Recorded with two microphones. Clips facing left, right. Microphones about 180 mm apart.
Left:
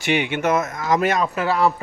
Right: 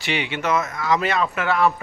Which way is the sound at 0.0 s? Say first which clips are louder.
Left 4 dB; 50° left (ahead or behind).